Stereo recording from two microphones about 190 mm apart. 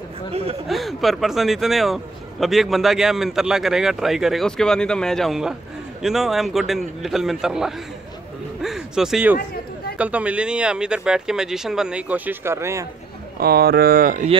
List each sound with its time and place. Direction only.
0.7 s a man's voice: centre (ahead or behind)
13.4 s speech: 55° right (ahead or behind)